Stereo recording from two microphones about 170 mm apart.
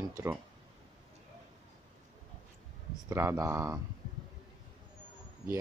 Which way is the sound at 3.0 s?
15° right (ahead or behind).